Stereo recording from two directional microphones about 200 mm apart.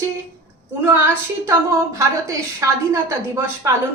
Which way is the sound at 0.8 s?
10° right (ahead or behind).